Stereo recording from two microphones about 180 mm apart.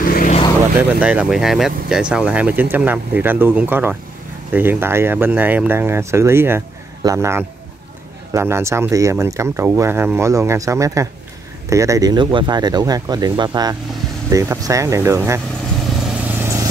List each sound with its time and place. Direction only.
0.0 s vehicle: 50° left (ahead or behind)
0.7 s speech: 5° right (ahead or behind)
16.0 s vehicle: 5° right (ahead or behind)